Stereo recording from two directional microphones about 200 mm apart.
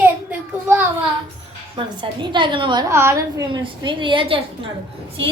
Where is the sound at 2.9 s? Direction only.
15° right (ahead or behind).